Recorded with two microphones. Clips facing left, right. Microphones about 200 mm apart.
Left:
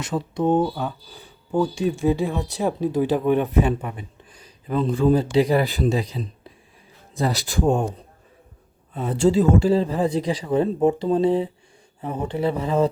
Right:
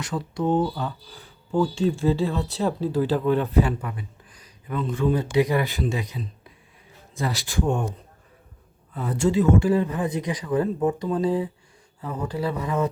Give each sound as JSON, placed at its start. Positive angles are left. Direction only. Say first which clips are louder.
{"t": 0.0, "sound": "a man's voice", "louder": "left 3 dB", "side_deg": 20}
{"t": 8.9, "sound": "speech", "louder": "left 4 dB", "side_deg": 25}